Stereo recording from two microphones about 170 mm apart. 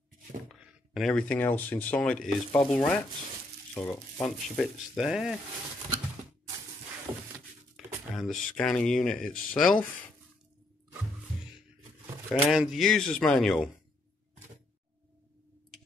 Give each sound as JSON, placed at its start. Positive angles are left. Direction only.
{"t": 0.5, "sound": "speech", "side_deg": 0}
{"t": 2.5, "sound": "rub", "side_deg": 10}
{"t": 3.7, "sound": "speech", "side_deg": 15}
{"t": 4.6, "sound": "speech", "side_deg": 0}
{"t": 7.1, "sound": "a sound", "side_deg": -20}
{"t": 7.7, "sound": "speech", "side_deg": 0}
{"t": 12.4, "sound": "speech", "side_deg": 0}